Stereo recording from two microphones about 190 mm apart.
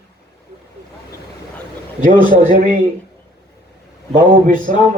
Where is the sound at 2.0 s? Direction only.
45° right (ahead or behind).